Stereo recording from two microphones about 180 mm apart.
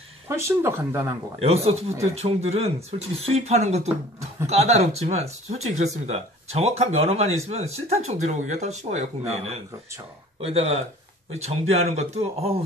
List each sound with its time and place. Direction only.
0.4 s speech: 15° right (ahead or behind)
1.4 s speech: 35° right (ahead or behind)